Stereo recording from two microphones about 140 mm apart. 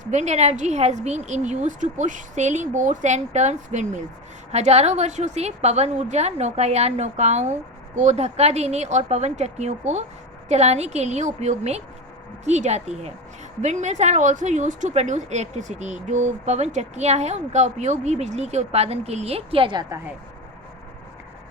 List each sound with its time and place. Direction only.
0.0 s a woman's voice: 55° right (ahead or behind); by 19.8 s 40° right (ahead or behind)